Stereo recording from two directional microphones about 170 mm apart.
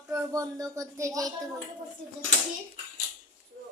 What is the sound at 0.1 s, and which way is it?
Speech, 20° right (ahead or behind).